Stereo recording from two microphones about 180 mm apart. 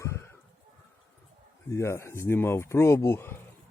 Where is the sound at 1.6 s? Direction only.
15° left (ahead or behind).